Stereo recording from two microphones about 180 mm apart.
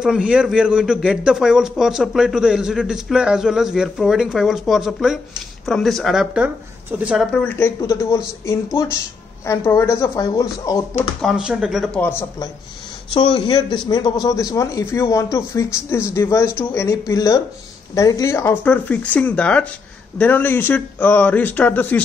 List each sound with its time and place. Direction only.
0.0 s a man's voice: 5° right (ahead or behind)
7.4 s speech: 15° left (ahead or behind)
11.1 s a man's voice: 5° right (ahead or behind); by 12.4 s 15° left (ahead or behind)
13.1 s speech: 30° left (ahead or behind); by 22.0 s 10° left (ahead or behind)